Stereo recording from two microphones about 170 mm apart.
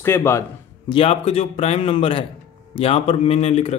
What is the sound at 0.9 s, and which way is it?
Speech, 35° left (ahead or behind).